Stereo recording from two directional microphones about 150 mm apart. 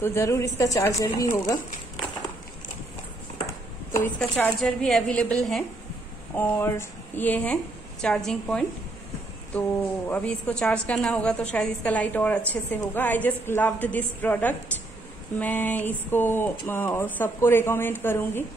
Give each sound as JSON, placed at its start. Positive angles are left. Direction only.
{"t": 0.0, "sound": "speech", "side_deg": 20}
{"t": 4.2, "sound": "a woman's voice", "side_deg": 5}